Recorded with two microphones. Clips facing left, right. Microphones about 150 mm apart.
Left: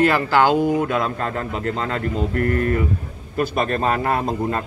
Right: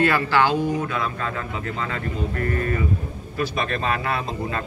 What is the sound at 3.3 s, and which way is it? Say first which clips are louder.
A man's voice: left 5 dB; 45° left (ahead or behind).